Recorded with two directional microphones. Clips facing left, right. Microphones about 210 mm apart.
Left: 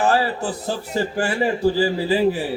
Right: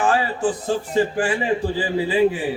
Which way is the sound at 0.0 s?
35° left (ahead or behind).